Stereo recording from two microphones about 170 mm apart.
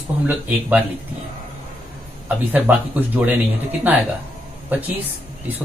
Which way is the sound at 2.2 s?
10° right (ahead or behind).